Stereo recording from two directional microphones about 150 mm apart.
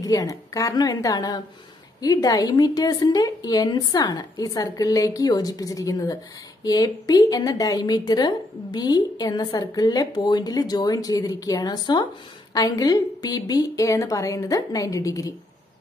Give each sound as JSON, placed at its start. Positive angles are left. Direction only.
{"t": 0.0, "sound": "a woman's voice", "side_deg": 25}